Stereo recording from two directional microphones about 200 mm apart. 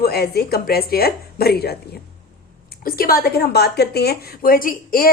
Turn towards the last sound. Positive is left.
turn(degrees=45)  # may be behind; listen again after turning